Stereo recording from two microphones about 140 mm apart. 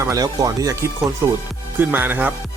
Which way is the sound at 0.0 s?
25° right (ahead or behind).